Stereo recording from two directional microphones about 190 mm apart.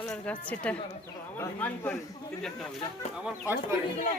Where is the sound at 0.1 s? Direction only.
5° left (ahead or behind).